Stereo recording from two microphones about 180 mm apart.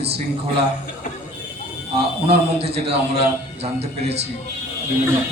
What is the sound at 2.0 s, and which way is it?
A man's voice, 35° right (ahead or behind).